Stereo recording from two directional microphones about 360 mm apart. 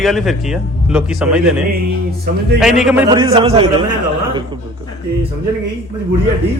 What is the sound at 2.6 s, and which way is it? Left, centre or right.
A man's voice, centre.